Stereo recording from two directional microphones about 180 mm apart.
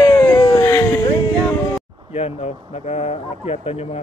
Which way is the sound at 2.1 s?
35° left (ahead or behind).